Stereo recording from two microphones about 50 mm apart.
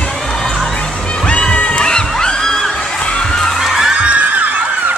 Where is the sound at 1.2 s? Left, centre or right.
Left.